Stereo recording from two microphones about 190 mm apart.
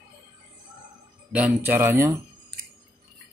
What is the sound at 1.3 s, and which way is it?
Speech, 10° right (ahead or behind).